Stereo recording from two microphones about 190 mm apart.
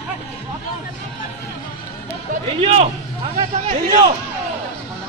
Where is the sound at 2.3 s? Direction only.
35° right (ahead or behind).